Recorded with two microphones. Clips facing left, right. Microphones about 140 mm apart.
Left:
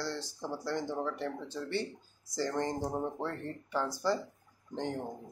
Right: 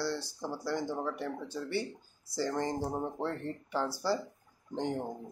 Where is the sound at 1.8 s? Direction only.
20° left (ahead or behind).